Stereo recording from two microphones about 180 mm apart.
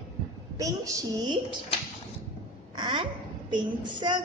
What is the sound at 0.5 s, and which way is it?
Child singing, 20° right (ahead or behind).